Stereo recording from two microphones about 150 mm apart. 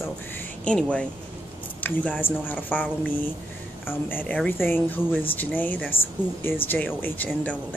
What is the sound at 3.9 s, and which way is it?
A woman's voice, 15° left (ahead or behind).